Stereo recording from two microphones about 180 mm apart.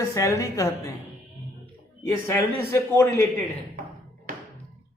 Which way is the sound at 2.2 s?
15° left (ahead or behind).